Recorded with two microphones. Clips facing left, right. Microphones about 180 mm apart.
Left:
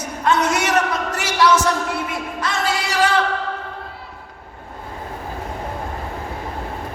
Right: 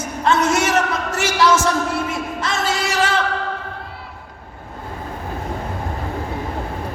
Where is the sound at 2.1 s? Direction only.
25° right (ahead or behind).